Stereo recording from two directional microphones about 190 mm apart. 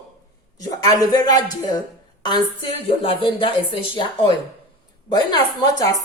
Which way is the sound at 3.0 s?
25° left (ahead or behind).